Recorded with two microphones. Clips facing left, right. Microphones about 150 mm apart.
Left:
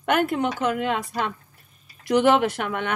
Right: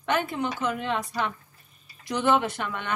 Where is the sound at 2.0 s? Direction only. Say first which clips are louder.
Left 5 dB; 75° left (ahead or behind).